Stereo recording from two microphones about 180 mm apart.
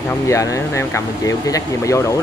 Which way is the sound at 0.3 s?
15° left (ahead or behind).